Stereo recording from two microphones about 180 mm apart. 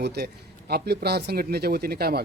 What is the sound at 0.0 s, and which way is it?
Speech, 65° right (ahead or behind).